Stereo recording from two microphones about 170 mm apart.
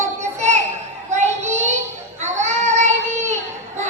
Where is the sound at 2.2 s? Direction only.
45° right (ahead or behind).